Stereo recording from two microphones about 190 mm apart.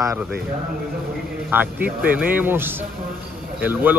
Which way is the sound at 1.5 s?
10° right (ahead or behind).